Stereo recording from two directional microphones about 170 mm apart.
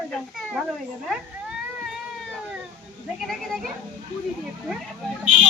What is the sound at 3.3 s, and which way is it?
Speech, centre (ahead or behind).